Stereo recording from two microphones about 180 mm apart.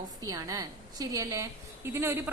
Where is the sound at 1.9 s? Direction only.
15° right (ahead or behind).